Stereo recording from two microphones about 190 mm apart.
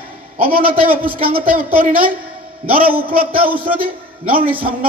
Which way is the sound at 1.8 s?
50° right (ahead or behind).